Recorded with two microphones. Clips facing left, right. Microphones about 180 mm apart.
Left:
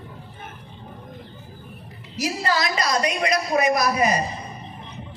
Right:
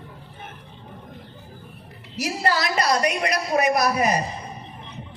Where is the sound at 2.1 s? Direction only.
60° right (ahead or behind).